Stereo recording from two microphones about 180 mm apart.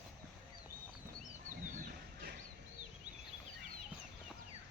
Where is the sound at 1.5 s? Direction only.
45° right (ahead or behind).